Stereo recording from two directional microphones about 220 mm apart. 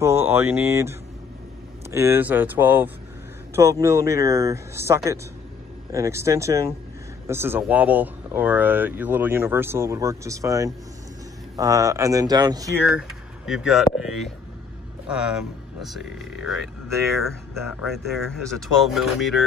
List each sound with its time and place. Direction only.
0.0 s speech: 10° right (ahead or behind)
13.5 s speech: centre (ahead or behind)
17.3 s speech: 10° right (ahead or behind)
17.8 s speech: centre (ahead or behind)